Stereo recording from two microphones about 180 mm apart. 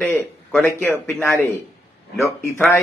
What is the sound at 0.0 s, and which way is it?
Speech, 10° left (ahead or behind).